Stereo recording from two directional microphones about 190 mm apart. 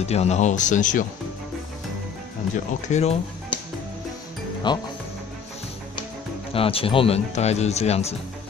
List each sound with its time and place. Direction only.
0.0 s speech: 35° left (ahead or behind)
2.9 s speech: 35° left (ahead or behind)
4.7 s speech: 25° left (ahead or behind)
6.5 s speech: 30° left (ahead or behind)